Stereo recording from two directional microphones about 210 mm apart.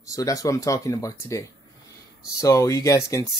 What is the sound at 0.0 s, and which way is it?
Speech, 15° left (ahead or behind).